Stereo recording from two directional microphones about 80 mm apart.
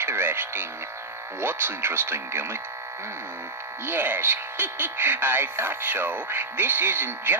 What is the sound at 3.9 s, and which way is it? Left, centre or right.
Speech, right.